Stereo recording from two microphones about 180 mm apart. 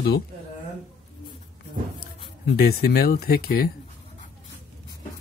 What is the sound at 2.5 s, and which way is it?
Speech, 60° left (ahead or behind).